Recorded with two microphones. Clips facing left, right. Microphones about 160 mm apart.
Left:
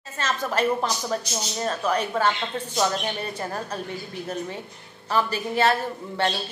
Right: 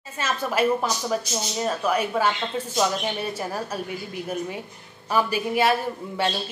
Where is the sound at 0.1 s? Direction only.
10° right (ahead or behind).